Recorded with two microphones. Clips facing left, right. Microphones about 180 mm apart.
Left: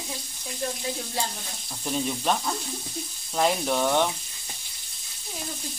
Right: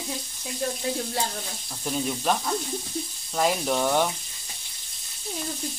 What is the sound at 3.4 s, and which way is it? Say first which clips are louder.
Speech: even; 5° right (ahead or behind).